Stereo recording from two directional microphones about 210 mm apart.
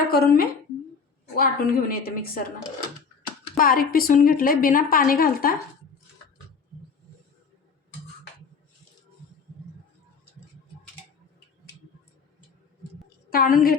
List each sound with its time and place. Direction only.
0.1 s a woman's voice: 45° left (ahead or behind)
3.6 s a woman's voice: 45° left (ahead or behind)
13.3 s a woman's voice: 45° left (ahead or behind)